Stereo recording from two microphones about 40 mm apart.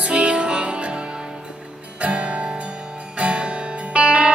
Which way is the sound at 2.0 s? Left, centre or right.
Right.